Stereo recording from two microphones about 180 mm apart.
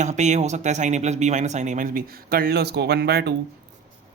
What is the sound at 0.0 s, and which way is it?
Speech, 40° right (ahead or behind).